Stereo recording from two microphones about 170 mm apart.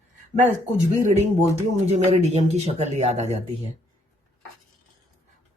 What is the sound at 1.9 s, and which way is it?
Speech, 40° right (ahead or behind).